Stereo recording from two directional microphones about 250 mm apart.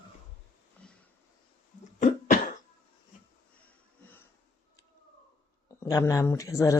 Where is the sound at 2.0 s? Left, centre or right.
Left.